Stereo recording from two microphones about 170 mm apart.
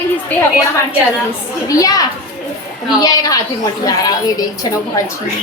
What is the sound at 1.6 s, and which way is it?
Child singing, 20° left (ahead or behind).